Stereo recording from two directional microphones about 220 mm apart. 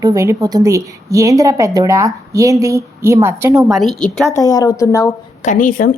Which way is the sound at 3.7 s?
Centre (ahead or behind).